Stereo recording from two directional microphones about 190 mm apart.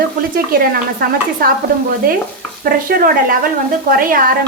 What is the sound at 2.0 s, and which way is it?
Speech, 50° right (ahead or behind).